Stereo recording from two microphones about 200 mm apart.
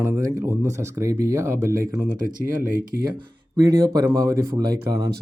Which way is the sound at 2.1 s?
45° right (ahead or behind).